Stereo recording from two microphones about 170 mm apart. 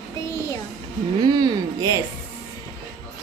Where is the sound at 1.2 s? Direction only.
25° right (ahead or behind).